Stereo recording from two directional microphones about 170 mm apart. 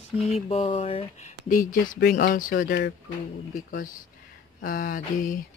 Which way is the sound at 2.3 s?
50° left (ahead or behind).